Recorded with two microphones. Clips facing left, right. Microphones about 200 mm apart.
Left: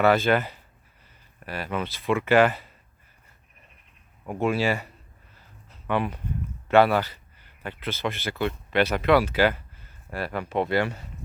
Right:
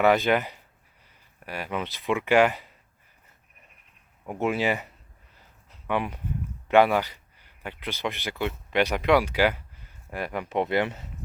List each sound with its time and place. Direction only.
0.0 s speech: 15° right (ahead or behind)
4.3 s speech: 20° right (ahead or behind)
5.7 s a sound: 15° right (ahead or behind)
6.7 s speech: 15° right (ahead or behind)